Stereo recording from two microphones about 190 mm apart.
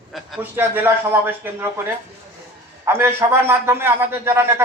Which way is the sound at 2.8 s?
10° right (ahead or behind).